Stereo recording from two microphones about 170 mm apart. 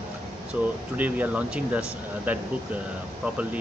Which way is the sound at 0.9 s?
10° right (ahead or behind).